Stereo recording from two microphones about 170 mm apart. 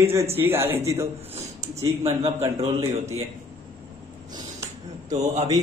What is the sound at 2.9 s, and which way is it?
Speech, 40° right (ahead or behind).